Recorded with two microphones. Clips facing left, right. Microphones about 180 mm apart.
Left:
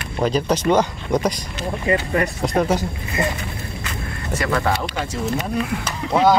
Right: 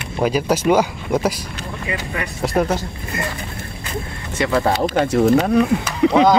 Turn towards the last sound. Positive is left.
turn(degrees=-90)